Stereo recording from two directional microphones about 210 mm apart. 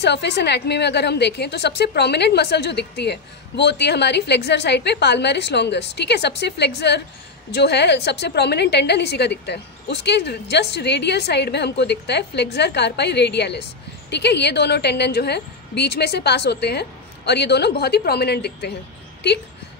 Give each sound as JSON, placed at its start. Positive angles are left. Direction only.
{"t": 0.0, "sound": "a woman's voice", "side_deg": 55}